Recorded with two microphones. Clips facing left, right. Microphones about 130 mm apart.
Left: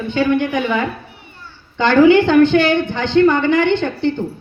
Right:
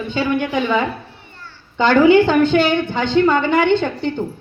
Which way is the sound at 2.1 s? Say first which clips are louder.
Left 1 dB; 10° right (ahead or behind).